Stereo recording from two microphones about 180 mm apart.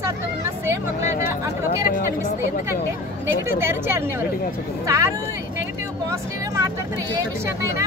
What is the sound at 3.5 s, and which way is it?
Speech, 15° right (ahead or behind).